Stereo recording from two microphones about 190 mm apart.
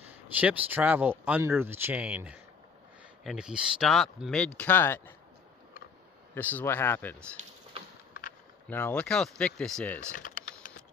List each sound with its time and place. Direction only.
0.0 s speech: 10° right (ahead or behind); by 5.1 s 10° left (ahead or behind)
6.3 s speech: 10° left (ahead or behind)
8.6 s speech: 10° left (ahead or behind)
10.1 s typing: 45° left (ahead or behind)